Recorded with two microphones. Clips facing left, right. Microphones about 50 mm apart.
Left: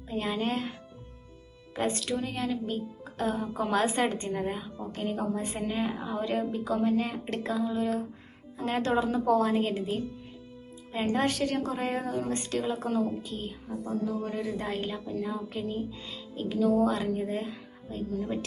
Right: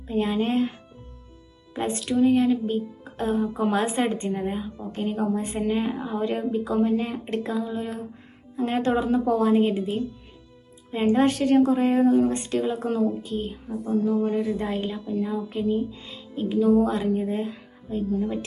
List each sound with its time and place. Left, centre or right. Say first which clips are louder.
0.1 s a woman's voice: right 6 dB; right
4.4 s speech: right 4 dB; centre
4.9 s a woman's voice: right 5 dB; right
5.9 s speech: right 4 dB; centre
6.1 s a woman's voice: right 4 dB; right
10.9 s a woman's voice: right 7 dB; right
14.7 s a woman's voice: right 5 dB; centre